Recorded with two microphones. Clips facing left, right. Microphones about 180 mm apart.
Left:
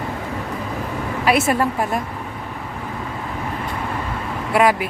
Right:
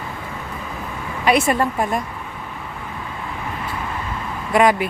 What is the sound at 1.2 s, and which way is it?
Speech, centre (ahead or behind).